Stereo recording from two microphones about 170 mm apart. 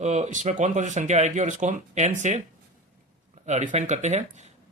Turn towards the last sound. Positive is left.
turn(degrees=-40)  # may be behind; listen again after turning